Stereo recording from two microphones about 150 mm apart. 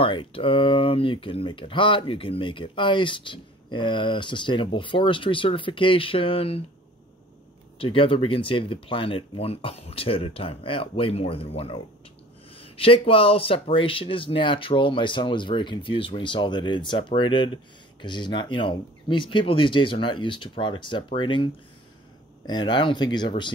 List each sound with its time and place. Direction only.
0.0 s speech: 35° left (ahead or behind)
7.8 s speech: 35° left (ahead or behind)
22.5 s speech: 30° left (ahead or behind)